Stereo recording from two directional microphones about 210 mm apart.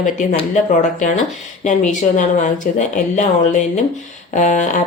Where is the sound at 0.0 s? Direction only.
35° left (ahead or behind).